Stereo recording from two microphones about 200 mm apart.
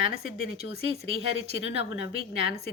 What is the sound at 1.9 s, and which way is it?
Speech, 60° left (ahead or behind).